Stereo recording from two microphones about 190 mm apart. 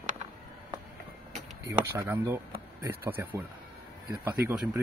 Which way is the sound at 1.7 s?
15° right (ahead or behind).